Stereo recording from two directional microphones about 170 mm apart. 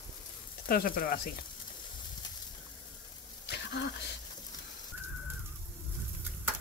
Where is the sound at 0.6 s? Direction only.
60° left (ahead or behind).